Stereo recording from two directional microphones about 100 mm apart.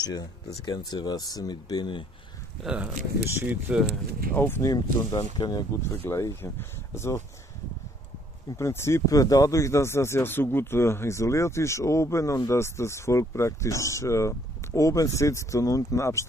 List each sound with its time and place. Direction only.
0.0 s speech: 40° left (ahead or behind)
2.6 s speech: 10° right (ahead or behind)
4.4 s speech: 20° left (ahead or behind)
4.6 s speech: 40° left (ahead or behind)
6.0 s speech: 25° left (ahead or behind)
8.5 s speech: 30° left (ahead or behind)